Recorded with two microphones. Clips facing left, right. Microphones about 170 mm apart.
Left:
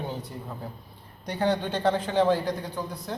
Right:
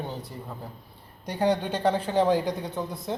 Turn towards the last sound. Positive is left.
turn(degrees=-20)  # may be behind; listen again after turning